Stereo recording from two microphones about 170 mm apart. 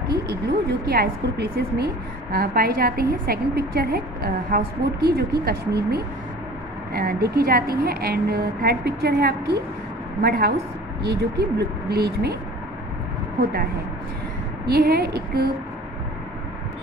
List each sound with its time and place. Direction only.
0.1 s a woman's voice: 70° right (ahead or behind)
14.7 s a woman's voice: 65° right (ahead or behind)